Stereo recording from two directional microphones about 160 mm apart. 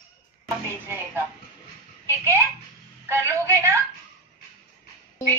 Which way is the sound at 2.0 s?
15° right (ahead or behind).